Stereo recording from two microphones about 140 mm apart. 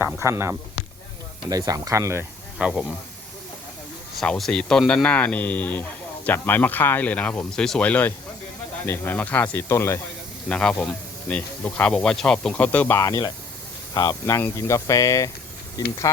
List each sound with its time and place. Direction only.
0.2 s speech: 20° right (ahead or behind)
2.6 s speech: 5° right (ahead or behind)
4.2 s speech: 5° left (ahead or behind); by 10.0 s 20° left (ahead or behind)
10.5 s speech: 5° left (ahead or behind)
13.0 s speech: 25° left (ahead or behind)